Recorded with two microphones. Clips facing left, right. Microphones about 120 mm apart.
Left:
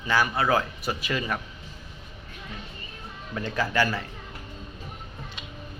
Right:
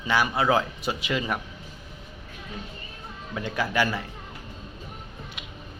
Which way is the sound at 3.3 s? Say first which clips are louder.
Even; 15° right (ahead or behind).